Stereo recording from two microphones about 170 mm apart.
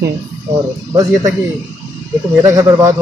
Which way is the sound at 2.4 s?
20° right (ahead or behind).